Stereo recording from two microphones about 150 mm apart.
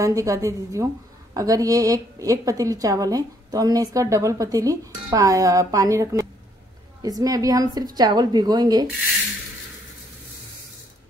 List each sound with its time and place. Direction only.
0.0 s a woman's voice: 20° right (ahead or behind)